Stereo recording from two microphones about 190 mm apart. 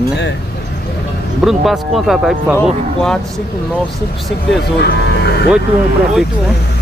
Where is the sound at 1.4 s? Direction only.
Centre (ahead or behind).